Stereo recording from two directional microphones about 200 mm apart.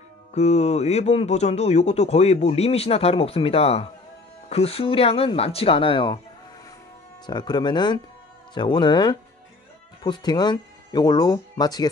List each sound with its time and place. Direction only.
0.3 s speech: 35° left (ahead or behind)
7.2 s speech: 20° left (ahead or behind)